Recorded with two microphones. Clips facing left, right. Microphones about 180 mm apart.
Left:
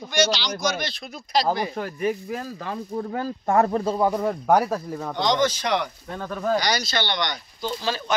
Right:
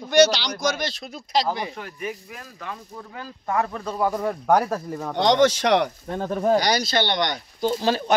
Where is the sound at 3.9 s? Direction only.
20° left (ahead or behind).